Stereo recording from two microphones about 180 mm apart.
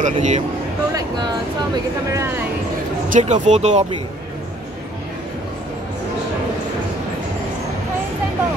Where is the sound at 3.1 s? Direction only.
40° right (ahead or behind).